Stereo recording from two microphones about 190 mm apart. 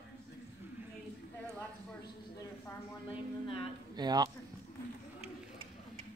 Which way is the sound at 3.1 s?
30° left (ahead or behind).